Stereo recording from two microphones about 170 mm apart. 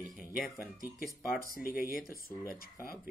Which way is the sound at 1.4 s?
60° left (ahead or behind).